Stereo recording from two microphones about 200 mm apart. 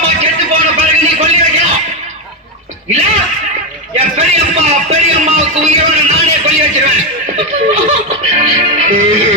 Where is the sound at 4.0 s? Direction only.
30° right (ahead or behind).